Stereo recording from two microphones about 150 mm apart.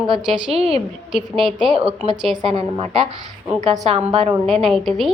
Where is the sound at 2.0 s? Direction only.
45° right (ahead or behind).